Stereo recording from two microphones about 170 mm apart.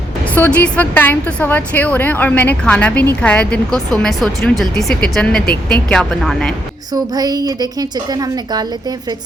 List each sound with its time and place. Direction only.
0.3 s a woman's voice: 10° left (ahead or behind)
6.9 s a woman's voice: 25° right (ahead or behind)